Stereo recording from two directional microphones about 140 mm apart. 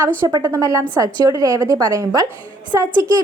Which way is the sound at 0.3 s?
25° right (ahead or behind).